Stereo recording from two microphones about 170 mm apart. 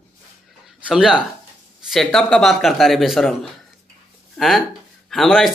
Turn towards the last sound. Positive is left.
turn(degrees=0)  # may be behind; listen again after turning